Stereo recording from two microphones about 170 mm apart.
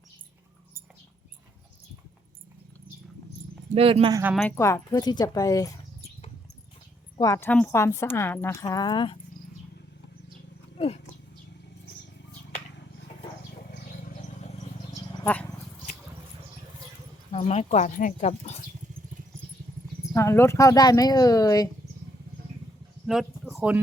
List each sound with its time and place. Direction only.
3.8 s speech: 35° right (ahead or behind)
4.1 s speech: 10° right (ahead or behind)
4.5 s speech: 15° left (ahead or behind)
7.2 s a woman's voice: 15° left (ahead or behind)
10.8 s wild animals: 35° left (ahead or behind)
15.2 s dog: 10° left (ahead or behind)
17.3 s speech: 40° left (ahead or behind)
20.1 s speech: 15° left (ahead or behind)
23.0 s a sound: centre (ahead or behind)